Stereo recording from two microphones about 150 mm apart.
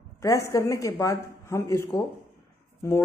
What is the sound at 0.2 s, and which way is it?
Speech, 20° left (ahead or behind).